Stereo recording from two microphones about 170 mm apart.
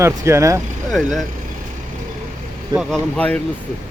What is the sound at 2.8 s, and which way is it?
Speech, 5° left (ahead or behind).